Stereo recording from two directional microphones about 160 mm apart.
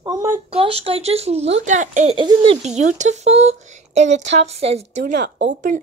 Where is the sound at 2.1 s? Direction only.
35° right (ahead or behind).